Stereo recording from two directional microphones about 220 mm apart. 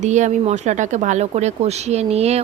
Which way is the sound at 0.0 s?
30° right (ahead or behind).